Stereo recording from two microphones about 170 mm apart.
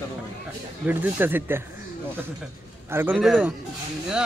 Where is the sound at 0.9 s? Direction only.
10° right (ahead or behind).